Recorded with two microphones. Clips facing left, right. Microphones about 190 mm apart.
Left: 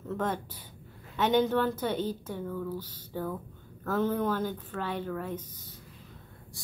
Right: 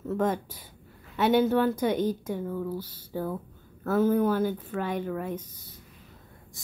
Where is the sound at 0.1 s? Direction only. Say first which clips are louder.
Right 5 dB; 10° right (ahead or behind).